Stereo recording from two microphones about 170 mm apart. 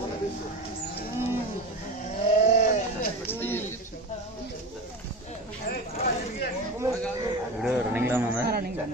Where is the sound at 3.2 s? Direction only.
10° left (ahead or behind).